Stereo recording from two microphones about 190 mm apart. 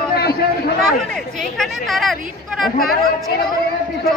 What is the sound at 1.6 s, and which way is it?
Speech, centre (ahead or behind).